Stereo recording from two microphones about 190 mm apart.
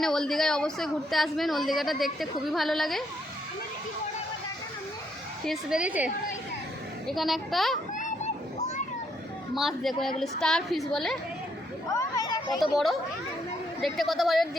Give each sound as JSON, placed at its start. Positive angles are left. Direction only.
{"t": 0.0, "sound": "a woman's voice", "side_deg": 0}
{"t": 5.5, "sound": "a woman's voice", "side_deg": -5}
{"t": 7.1, "sound": "a woman's voice", "side_deg": 0}
{"t": 7.9, "sound": "children playing", "side_deg": 40}
{"t": 9.6, "sound": "a woman's voice", "side_deg": 0}
{"t": 11.9, "sound": "speech", "side_deg": 15}
{"t": 12.5, "sound": "a woman's voice", "side_deg": 0}